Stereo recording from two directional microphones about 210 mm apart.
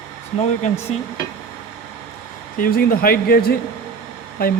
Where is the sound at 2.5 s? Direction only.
45° left (ahead or behind).